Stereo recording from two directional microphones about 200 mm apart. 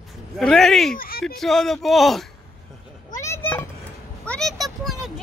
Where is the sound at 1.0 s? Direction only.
50° left (ahead or behind).